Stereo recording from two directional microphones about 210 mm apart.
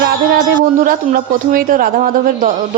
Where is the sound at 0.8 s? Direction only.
40° right (ahead or behind).